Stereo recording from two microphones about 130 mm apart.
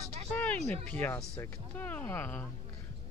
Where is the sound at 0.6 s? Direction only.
60° right (ahead or behind).